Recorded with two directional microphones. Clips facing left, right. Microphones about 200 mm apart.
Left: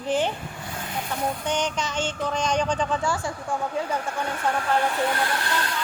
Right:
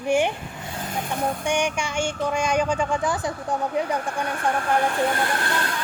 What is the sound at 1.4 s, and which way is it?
Speech, 10° right (ahead or behind).